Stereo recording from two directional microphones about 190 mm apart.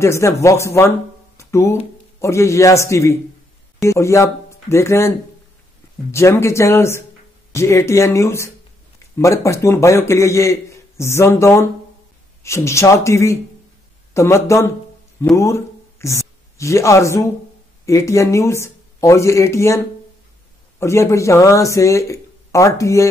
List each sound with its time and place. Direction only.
0.0 s a man's voice: 15° left (ahead or behind)
6.1 s a man's voice: 15° left (ahead or behind)
20.8 s a man's voice: 15° left (ahead or behind)